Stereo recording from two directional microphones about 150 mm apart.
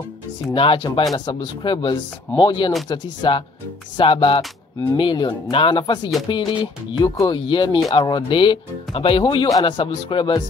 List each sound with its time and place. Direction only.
0.6 s speech: 35° left (ahead or behind)